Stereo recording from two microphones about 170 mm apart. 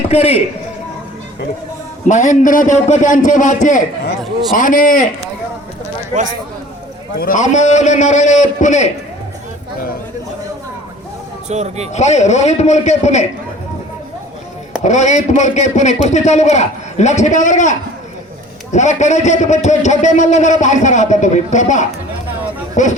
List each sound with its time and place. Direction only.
0.1 s a man's voice: 35° left (ahead or behind)
2.0 s a man's voice: 45° left (ahead or behind)
7.2 s a man's voice: 50° left (ahead or behind)
11.4 s speech: 40° right (ahead or behind)
11.9 s a man's voice: 40° left (ahead or behind)
14.8 s a man's voice: 45° left (ahead or behind)